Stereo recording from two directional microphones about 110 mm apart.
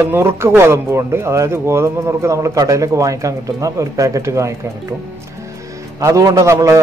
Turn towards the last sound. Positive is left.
turn(degrees=-30)  # may be behind; listen again after turning